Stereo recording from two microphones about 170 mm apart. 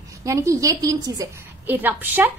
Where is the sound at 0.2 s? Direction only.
20° right (ahead or behind).